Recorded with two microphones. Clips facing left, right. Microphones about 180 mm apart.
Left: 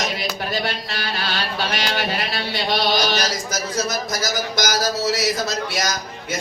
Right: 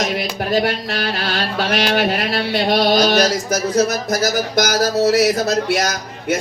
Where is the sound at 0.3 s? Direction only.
50° right (ahead or behind).